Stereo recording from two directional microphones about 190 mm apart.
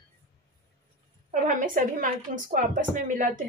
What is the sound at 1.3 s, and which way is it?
A woman's voice, 45° right (ahead or behind).